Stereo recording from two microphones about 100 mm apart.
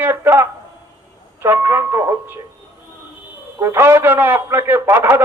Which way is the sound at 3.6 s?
25° right (ahead or behind).